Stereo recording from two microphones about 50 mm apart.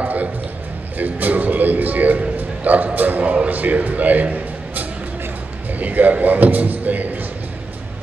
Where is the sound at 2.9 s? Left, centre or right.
Right.